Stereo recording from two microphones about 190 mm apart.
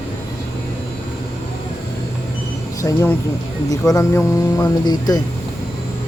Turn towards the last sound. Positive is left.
turn(degrees=20)  # may be behind; listen again after turning